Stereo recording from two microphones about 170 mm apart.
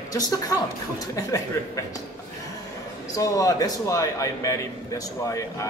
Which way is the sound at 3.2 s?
20° left (ahead or behind).